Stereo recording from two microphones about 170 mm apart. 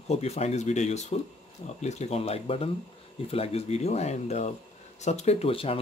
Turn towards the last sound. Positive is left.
turn(degrees=35)  # may be behind; listen again after turning